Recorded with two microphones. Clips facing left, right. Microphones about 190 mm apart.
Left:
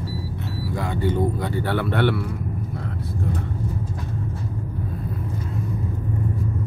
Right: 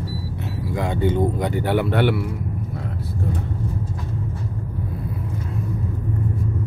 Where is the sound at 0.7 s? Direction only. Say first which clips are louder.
Right 3 dB; 20° right (ahead or behind).